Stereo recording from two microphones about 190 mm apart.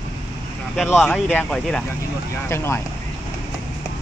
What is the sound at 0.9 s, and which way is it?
Speech, centre (ahead or behind).